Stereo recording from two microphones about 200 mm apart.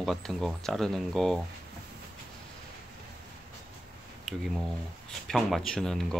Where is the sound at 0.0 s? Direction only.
Centre (ahead or behind).